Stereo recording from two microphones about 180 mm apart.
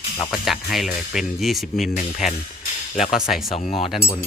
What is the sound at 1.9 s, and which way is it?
Speech, 45° left (ahead or behind).